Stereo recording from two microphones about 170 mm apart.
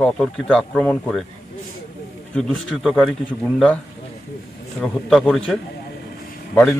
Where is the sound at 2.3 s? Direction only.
Centre (ahead or behind).